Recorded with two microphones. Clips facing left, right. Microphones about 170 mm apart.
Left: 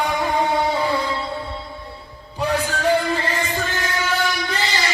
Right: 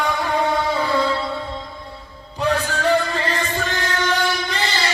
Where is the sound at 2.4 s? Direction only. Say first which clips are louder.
Right 1 dB; 10° left (ahead or behind).